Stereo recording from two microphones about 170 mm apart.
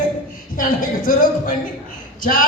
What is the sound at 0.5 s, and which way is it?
Speech, 55° left (ahead or behind).